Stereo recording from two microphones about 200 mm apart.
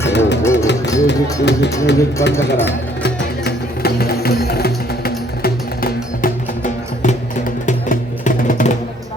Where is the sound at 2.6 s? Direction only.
55° left (ahead or behind).